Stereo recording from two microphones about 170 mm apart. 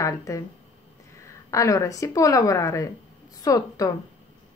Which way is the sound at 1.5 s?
20° left (ahead or behind).